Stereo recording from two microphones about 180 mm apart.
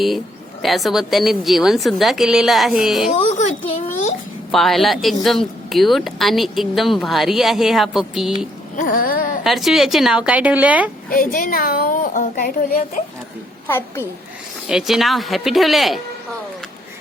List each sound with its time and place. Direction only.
0.6 s speech: centre (ahead or behind)
3.2 s a child's voice: 40° left (ahead or behind)
4.5 s speech: centre (ahead or behind)
8.7 s a sound: 50° left (ahead or behind)
9.4 s speech: centre (ahead or behind)
11.1 s a woman's voice: 50° left (ahead or behind)
13.7 s a woman's voice: 15° left (ahead or behind)
14.7 s speech: 5° right (ahead or behind)